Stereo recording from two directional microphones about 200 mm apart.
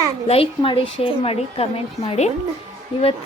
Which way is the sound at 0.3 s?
25° left (ahead or behind).